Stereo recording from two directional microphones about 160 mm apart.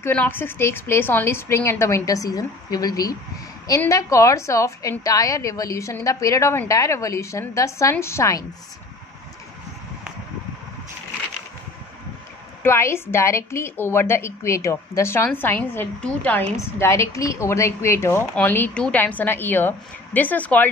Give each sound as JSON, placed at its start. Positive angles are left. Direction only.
{"t": 0.0, "sound": "a woman's voice", "side_deg": 10}
{"t": 12.6, "sound": "speech", "side_deg": 15}